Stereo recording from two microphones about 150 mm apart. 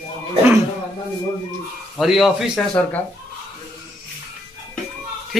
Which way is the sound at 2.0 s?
Centre (ahead or behind).